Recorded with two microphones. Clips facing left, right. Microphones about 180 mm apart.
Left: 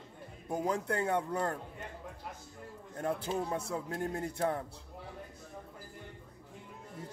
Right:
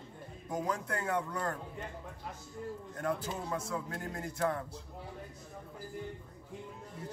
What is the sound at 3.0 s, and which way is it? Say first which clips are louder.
Speech: left 2 dB; 30° left (ahead or behind).